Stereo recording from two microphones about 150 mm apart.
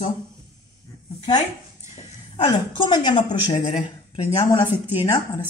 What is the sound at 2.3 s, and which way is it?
A woman's voice, 30° left (ahead or behind).